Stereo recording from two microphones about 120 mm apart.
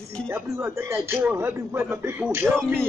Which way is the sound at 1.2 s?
15° right (ahead or behind).